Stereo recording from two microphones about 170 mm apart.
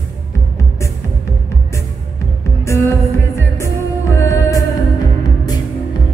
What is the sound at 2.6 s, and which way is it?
Music, 15° left (ahead or behind).